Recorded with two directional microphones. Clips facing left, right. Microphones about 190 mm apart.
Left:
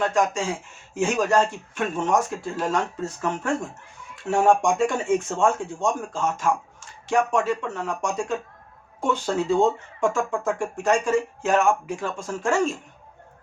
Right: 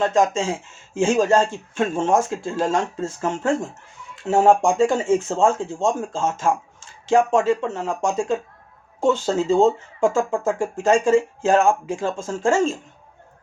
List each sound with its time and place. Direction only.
0.0 s speech: 25° right (ahead or behind)